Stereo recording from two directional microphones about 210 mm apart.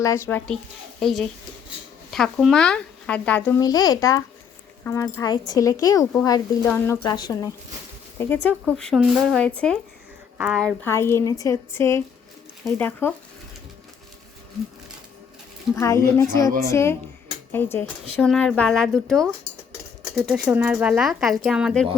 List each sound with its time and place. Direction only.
0.0 s speech: 15° left (ahead or behind)
3.6 s speech: 15° left (ahead or behind)
8.6 s a woman's voice: centre (ahead or behind)
10.6 s speech: 5° left (ahead or behind)
15.7 s speech: 15° left (ahead or behind)